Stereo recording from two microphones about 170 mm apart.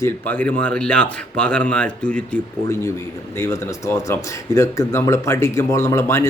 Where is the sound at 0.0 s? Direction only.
10° left (ahead or behind).